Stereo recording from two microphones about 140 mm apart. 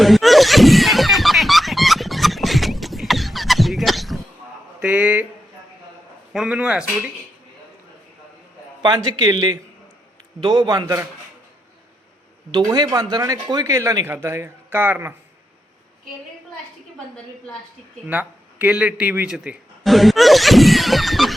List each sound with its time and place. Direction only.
0.0 s a sound: centre (ahead or behind)
4.8 s a sound: 10° right (ahead or behind)
6.3 s speech: 5° right (ahead or behind)
8.8 s speech: 30° right (ahead or behind)
12.5 s speech: 30° right (ahead or behind)
18.1 s speech: 10° right (ahead or behind)